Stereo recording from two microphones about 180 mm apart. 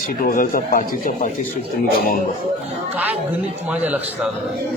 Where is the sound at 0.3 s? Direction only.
50° left (ahead or behind).